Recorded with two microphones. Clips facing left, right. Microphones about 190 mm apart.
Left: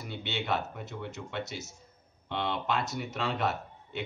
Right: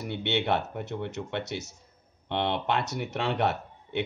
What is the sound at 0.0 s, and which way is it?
Speech, 65° right (ahead or behind).